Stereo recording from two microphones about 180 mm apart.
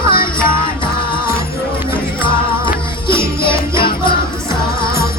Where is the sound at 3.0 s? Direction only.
30° left (ahead or behind).